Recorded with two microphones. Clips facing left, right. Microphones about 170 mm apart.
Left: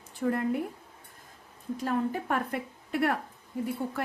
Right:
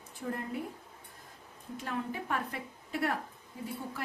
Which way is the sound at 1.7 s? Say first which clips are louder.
Left 7 dB; 40° left (ahead or behind).